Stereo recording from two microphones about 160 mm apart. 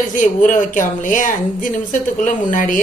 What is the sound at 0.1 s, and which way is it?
Speech, 55° left (ahead or behind).